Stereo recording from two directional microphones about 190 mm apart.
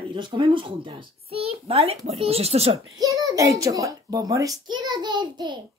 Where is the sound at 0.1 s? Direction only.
25° right (ahead or behind).